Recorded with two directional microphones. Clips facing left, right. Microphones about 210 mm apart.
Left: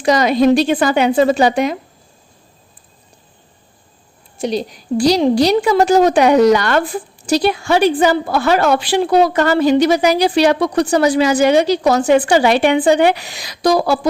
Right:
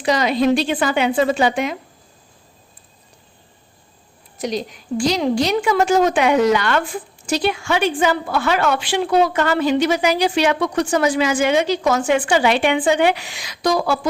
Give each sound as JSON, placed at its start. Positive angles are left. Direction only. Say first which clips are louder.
{"t": 0.0, "sound": "a woman's voice", "louder": "left 5 dB", "side_deg": 45}
{"t": 4.4, "sound": "a woman's voice", "louder": "left 4 dB", "side_deg": 30}